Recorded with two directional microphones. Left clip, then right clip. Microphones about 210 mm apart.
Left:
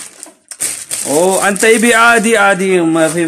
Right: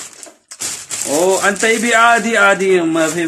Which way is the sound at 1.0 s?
45° left (ahead or behind).